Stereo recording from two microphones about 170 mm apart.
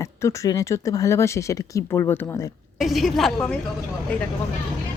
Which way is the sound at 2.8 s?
Centre (ahead or behind).